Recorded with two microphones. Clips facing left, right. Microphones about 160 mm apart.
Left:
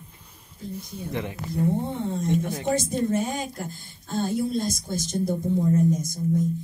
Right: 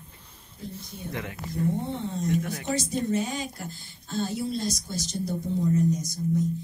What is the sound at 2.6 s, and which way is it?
Speech, 50° left (ahead or behind).